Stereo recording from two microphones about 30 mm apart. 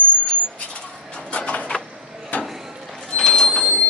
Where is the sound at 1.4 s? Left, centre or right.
Left.